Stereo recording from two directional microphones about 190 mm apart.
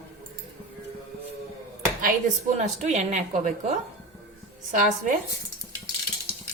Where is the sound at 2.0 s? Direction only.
40° right (ahead or behind).